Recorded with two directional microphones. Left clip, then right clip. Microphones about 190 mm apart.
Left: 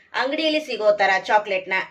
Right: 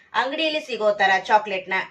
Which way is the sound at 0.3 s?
30° left (ahead or behind).